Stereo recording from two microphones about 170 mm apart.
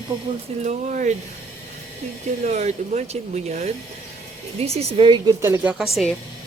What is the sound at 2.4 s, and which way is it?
A woman's voice, 45° right (ahead or behind).